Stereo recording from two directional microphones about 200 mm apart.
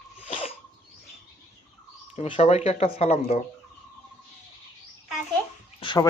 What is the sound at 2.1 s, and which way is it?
Speech, 25° left (ahead or behind).